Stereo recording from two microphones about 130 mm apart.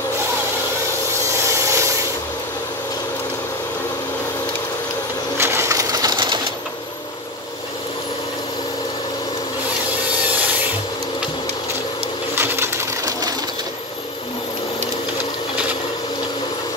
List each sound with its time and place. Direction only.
1.2 s rub: 20° right (ahead or behind)
5.4 s sewing machine: 20° right (ahead or behind); by 6.4 s 35° right (ahead or behind)
12.4 s a sound: 20° right (ahead or behind)